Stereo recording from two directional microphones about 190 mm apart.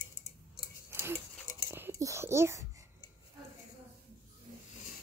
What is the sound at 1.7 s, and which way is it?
Whispering, 10° right (ahead or behind).